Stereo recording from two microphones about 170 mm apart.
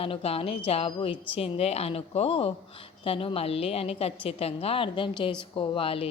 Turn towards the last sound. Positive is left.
turn(degrees=35)  # may be behind; listen again after turning